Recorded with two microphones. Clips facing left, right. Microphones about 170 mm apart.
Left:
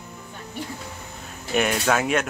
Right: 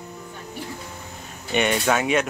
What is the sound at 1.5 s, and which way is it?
Speech, centre (ahead or behind).